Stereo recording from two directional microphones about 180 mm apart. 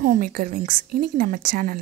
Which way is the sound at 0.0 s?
50° right (ahead or behind).